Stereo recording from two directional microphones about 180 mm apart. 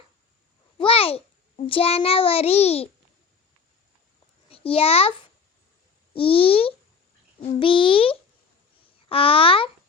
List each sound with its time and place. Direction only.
0.8 s a child's voice: 30° left (ahead or behind)
4.4 s a child's voice: 30° left (ahead or behind)
6.1 s a child's voice: 30° left (ahead or behind)